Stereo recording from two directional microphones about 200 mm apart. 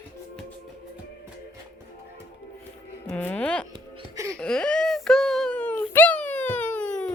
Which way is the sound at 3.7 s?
20° right (ahead or behind).